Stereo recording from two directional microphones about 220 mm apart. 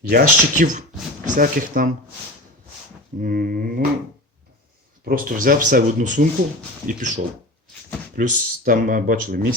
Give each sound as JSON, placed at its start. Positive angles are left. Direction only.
{"t": 0.1, "sound": "speech", "side_deg": -40}
{"t": 3.2, "sound": "whip", "side_deg": -40}
{"t": 5.0, "sound": "speech", "side_deg": -40}
{"t": 8.2, "sound": "speech", "side_deg": -40}